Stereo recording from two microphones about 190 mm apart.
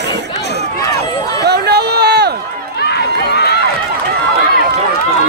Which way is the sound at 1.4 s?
60° right (ahead or behind).